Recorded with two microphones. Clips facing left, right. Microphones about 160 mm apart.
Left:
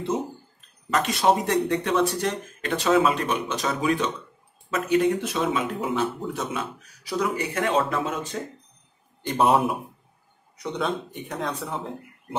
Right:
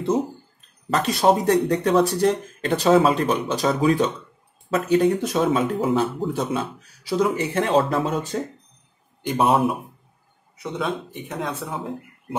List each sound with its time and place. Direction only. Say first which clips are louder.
0.8 s speech: right 3 dB; 35° right (ahead or behind)
9.2 s speech: right 1 dB; 5° right (ahead or behind)